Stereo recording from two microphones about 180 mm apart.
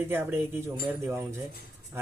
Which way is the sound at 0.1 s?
10° right (ahead or behind).